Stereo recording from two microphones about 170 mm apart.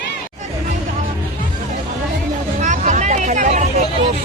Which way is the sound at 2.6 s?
45° right (ahead or behind).